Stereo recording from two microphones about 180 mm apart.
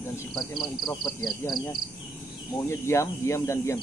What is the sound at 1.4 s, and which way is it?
Speech, 15° left (ahead or behind).